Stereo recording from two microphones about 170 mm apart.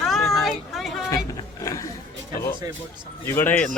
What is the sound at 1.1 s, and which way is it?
Speech, 20° left (ahead or behind).